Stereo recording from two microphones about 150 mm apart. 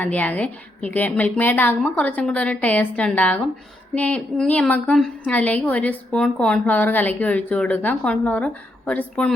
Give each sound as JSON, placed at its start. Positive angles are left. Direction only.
{"t": 0.0, "sound": "a woman's voice", "side_deg": 10}